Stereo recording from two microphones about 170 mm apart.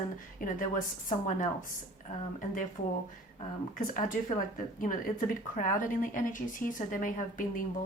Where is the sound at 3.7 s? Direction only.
50° left (ahead or behind).